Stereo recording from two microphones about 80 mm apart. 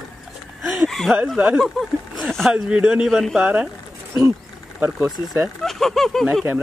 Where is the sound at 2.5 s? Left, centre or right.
Centre.